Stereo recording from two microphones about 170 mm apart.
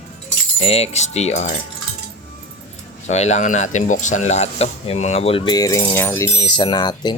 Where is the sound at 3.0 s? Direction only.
40° left (ahead or behind); by 7.1 s 25° left (ahead or behind).